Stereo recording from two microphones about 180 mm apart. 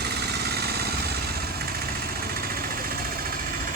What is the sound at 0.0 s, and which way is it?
Vehicle, 65° right (ahead or behind).